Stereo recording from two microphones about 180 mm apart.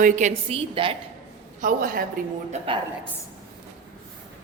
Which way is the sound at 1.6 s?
50° right (ahead or behind).